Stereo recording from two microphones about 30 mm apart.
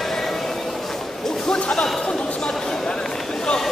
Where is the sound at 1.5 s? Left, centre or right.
Left.